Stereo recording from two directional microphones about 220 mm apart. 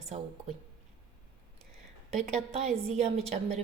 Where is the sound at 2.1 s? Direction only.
30° right (ahead or behind).